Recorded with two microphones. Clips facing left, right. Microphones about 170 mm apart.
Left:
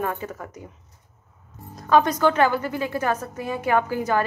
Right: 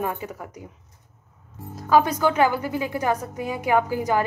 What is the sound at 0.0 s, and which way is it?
Speech, 15° right (ahead or behind).